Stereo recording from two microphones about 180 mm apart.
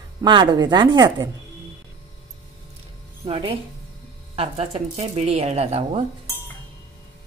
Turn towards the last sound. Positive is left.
turn(degrees=-35)  # may be behind; listen again after turning